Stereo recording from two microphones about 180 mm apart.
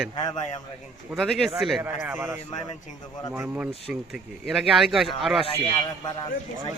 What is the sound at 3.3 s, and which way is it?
Speech, 10° right (ahead or behind).